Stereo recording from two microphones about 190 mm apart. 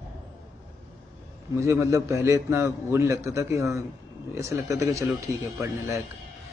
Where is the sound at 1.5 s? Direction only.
15° right (ahead or behind).